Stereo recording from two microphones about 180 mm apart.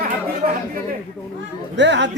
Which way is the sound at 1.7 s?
80° right.